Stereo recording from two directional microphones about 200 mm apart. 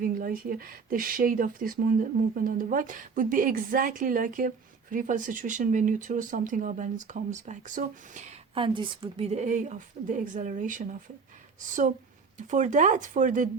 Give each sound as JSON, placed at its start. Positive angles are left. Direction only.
{"t": 0.0, "sound": "speech", "side_deg": -45}